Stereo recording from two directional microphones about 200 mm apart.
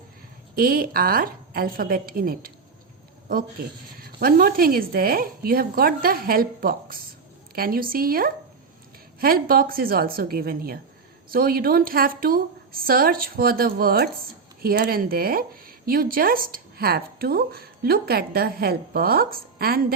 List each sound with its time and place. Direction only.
0.5 s a woman's voice: 45° right (ahead or behind)
3.9 s a woman's voice: 45° right (ahead or behind)